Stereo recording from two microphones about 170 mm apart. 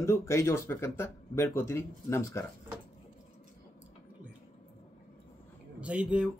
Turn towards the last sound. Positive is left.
turn(degrees=-5)  # may be behind; listen again after turning